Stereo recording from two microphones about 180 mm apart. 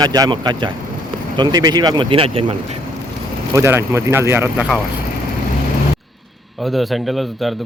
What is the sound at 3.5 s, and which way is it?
Speech, 15° right (ahead or behind).